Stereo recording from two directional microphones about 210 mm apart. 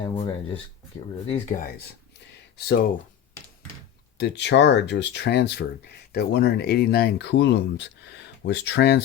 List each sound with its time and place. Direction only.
0.0 s speech: 25° left (ahead or behind)
4.2 s speech: 55° left (ahead or behind)